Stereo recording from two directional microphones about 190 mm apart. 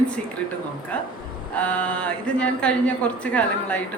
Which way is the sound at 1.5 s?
5° left (ahead or behind).